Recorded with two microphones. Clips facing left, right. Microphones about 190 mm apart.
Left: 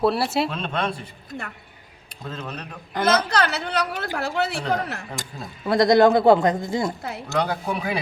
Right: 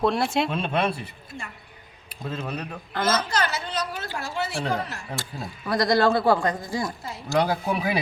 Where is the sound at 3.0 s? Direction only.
60° left (ahead or behind).